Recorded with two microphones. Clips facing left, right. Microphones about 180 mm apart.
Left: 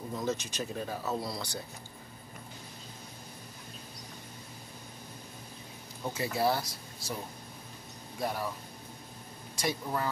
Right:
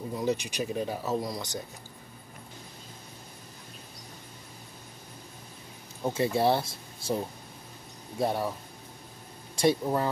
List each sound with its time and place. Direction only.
0.1 s speech: 15° right (ahead or behind)
6.0 s speech: 25° right (ahead or behind)
8.2 s speech: 25° right (ahead or behind)
9.6 s speech: 25° right (ahead or behind)